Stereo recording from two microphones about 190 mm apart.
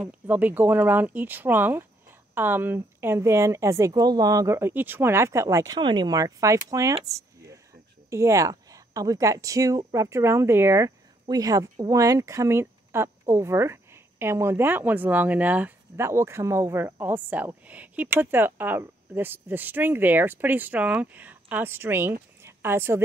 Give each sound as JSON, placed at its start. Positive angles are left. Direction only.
{"t": 0.0, "sound": "speech", "side_deg": -10}
{"t": 8.1, "sound": "a woman's voice", "side_deg": -15}
{"t": 22.4, "sound": "a sound", "side_deg": -10}